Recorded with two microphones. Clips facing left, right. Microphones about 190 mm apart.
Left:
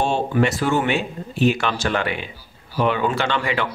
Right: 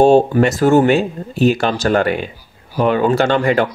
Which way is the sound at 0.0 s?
40° right (ahead or behind).